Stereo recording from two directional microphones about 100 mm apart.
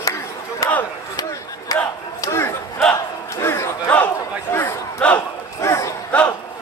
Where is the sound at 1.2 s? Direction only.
35° left (ahead or behind).